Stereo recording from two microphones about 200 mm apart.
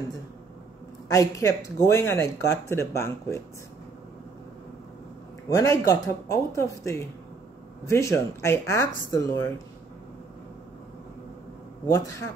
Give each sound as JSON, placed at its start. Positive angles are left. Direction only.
{"t": 1.0, "sound": "speech", "side_deg": 15}
{"t": 5.5, "sound": "speech", "side_deg": 15}
{"t": 11.9, "sound": "speech", "side_deg": 15}